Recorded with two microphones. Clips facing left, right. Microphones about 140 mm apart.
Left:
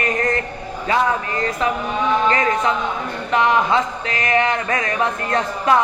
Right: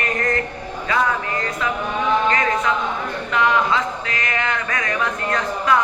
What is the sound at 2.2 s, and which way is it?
Speech, 30° left (ahead or behind).